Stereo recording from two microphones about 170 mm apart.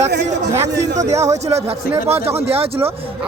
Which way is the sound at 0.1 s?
80° right.